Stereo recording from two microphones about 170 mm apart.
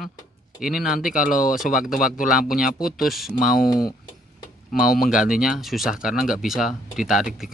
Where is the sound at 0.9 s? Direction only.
55° left (ahead or behind).